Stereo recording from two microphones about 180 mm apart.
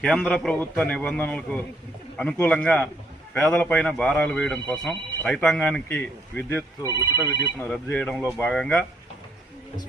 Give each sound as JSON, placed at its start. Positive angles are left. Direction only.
{"t": 0.0, "sound": "speech", "side_deg": 5}
{"t": 6.8, "sound": "speech", "side_deg": -15}
{"t": 7.6, "sound": "speech", "side_deg": 10}